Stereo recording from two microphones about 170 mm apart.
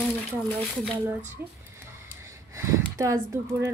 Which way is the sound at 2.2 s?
15° right (ahead or behind).